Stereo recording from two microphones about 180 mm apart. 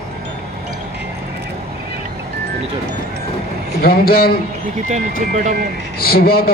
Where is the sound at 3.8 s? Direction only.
60° left (ahead or behind).